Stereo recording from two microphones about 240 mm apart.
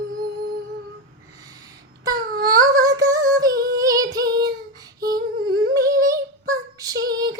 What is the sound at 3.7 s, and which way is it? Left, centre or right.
Female singing, centre.